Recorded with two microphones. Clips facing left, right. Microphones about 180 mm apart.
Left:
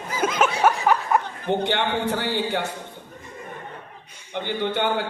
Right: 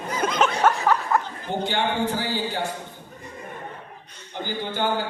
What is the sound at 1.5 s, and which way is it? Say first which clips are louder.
A man's voice: left 2 dB; 65° left (ahead or behind).